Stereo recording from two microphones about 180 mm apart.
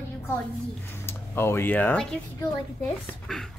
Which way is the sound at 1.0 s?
15° left (ahead or behind).